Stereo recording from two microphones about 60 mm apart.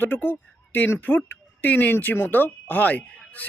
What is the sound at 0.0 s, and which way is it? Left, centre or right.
A man's voice, left.